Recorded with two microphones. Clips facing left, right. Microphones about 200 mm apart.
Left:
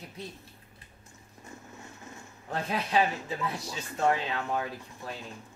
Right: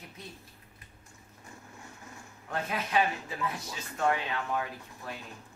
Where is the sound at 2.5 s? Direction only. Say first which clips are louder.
Left 2 dB; 30° left (ahead or behind).